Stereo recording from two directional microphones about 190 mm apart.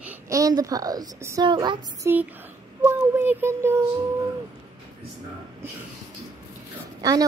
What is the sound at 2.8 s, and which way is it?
Speech, 10° right (ahead or behind).